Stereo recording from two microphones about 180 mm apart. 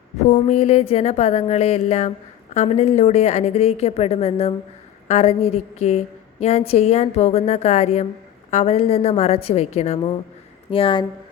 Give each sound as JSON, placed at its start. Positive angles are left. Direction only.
{"t": 0.3, "sound": "a woman's voice", "side_deg": 40}